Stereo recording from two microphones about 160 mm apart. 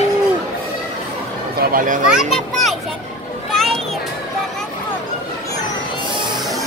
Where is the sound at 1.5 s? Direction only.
60° right (ahead or behind).